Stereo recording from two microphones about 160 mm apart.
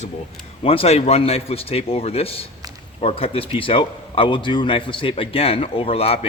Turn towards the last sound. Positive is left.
turn(degrees=40)  # may be behind; listen again after turning